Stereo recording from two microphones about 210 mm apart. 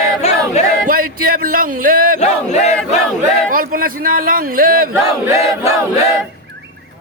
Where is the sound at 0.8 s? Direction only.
45° right (ahead or behind).